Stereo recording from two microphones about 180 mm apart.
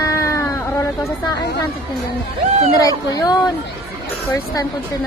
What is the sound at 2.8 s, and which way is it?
Speech, 20° left (ahead or behind).